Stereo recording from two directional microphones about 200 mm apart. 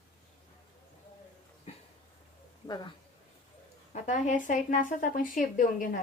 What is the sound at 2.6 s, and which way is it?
Speech, 20° left (ahead or behind).